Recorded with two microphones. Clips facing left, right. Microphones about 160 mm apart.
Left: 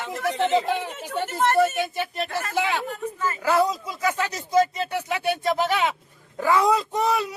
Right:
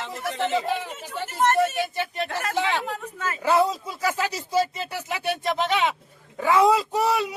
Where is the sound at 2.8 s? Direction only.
80° right.